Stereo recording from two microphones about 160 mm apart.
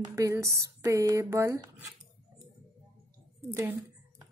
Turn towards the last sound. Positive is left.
turn(degrees=-20)  # may be behind; listen again after turning